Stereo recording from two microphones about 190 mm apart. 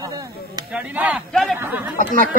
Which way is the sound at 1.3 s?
5° left (ahead or behind).